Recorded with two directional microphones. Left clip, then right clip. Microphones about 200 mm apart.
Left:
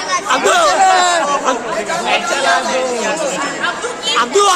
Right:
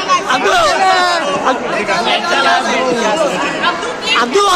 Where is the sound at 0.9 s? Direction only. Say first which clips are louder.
Even; 35° left (ahead or behind).